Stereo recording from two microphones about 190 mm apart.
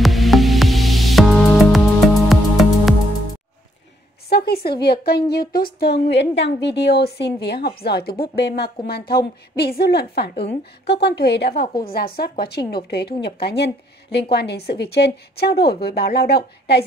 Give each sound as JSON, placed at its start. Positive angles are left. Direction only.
{"t": 0.0, "sound": "music", "side_deg": 0}
{"t": 4.3, "sound": "a woman's voice", "side_deg": 55}